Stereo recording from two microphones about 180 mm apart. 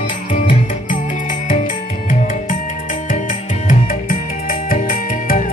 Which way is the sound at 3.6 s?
50° left (ahead or behind).